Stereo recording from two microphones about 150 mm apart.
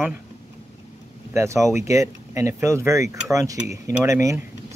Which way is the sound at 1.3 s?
20° right (ahead or behind).